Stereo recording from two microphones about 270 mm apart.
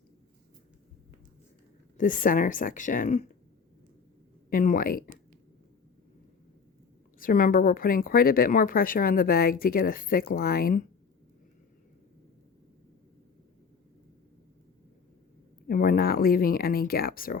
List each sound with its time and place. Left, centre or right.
2.0 s speech: left
4.4 s a woman's voice: left
7.2 s a woman's voice: left
15.6 s speech: left